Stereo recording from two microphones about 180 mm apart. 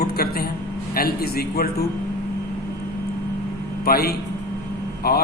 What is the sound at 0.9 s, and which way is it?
Speech, 55° left (ahead or behind).